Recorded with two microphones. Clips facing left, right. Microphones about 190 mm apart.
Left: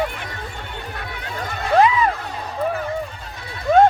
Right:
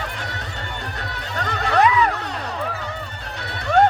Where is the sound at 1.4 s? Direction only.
70° right (ahead or behind).